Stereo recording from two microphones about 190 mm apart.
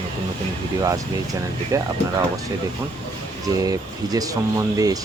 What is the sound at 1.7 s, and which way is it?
Speech, 15° right (ahead or behind).